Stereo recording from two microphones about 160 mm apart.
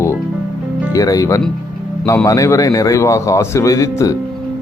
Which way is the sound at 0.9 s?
20° left (ahead or behind).